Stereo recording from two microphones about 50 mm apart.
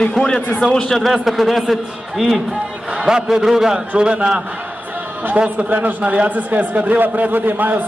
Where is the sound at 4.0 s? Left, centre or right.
Right.